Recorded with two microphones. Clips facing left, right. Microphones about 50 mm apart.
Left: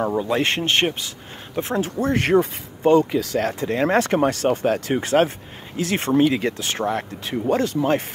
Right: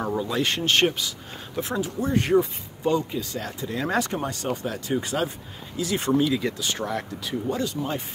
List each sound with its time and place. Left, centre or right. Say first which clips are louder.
0.2 s speech: left 4 dB; left
1.8 s speech: left 3 dB; left
2.3 s speech: left 3 dB; left
3.0 s speech: left 10 dB; left
3.4 s speech: left 8 dB; left
4.1 s speech: left 10 dB; left
4.5 s speech: left 7 dB; left
7.4 s speech: left 9 dB; left